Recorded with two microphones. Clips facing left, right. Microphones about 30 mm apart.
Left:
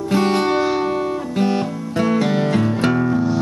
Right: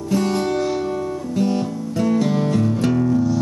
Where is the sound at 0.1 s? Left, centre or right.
Left.